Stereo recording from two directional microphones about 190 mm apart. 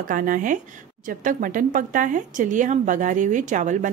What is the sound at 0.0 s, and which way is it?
A woman's voice, 45° right (ahead or behind).